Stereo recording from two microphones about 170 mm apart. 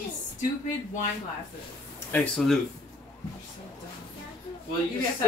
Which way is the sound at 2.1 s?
5° left (ahead or behind).